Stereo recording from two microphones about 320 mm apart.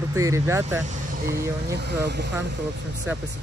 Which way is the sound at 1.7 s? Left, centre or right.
Right.